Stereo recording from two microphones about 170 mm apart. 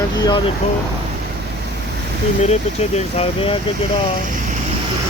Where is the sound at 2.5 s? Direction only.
35° left (ahead or behind).